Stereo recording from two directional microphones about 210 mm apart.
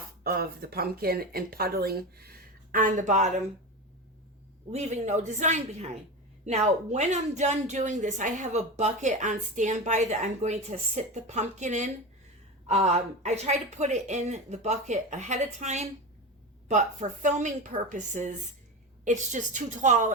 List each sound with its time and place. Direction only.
0.2 s speech: 45° right (ahead or behind)
4.7 s speech: 35° right (ahead or behind)